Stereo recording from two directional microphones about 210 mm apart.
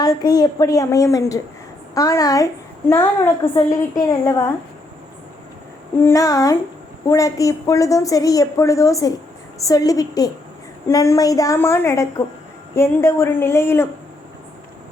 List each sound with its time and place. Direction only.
0.0 s a woman's voice: 20° left (ahead or behind)
6.0 s a woman's voice: 15° left (ahead or behind)